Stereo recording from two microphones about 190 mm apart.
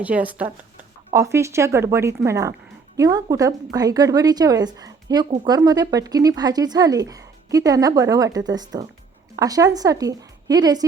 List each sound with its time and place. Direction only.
0.0 s a woman's voice: 10° right (ahead or behind)